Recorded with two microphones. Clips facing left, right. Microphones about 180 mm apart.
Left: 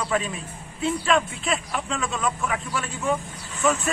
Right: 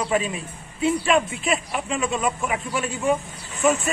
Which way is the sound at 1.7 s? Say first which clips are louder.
Right 3 dB; 15° right (ahead or behind).